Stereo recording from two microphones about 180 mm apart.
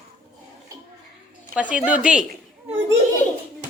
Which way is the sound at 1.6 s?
5° right (ahead or behind).